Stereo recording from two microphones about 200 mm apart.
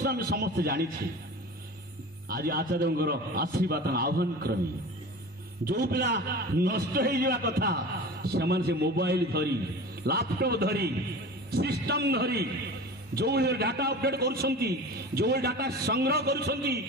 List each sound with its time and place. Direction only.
0.0 s a man's voice: 55° right (ahead or behind)
2.2 s a man's voice: 50° right (ahead or behind)
5.7 s a man's voice: 50° right (ahead or behind)